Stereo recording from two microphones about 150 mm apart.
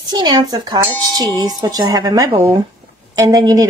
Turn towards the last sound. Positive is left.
turn(degrees=-25)  # may be behind; listen again after turning